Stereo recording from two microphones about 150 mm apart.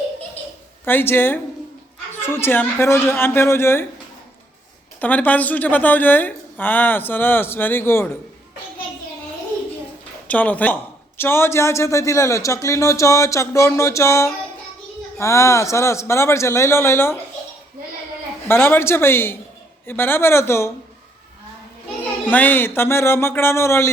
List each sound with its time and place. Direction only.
0.9 s a woman's voice: 15° left (ahead or behind)
4.9 s a woman's voice: 10° left (ahead or behind)
10.2 s a woman's voice: 10° left (ahead or behind)
18.4 s a woman's voice: 15° left (ahead or behind)
22.3 s a woman's voice: 10° left (ahead or behind)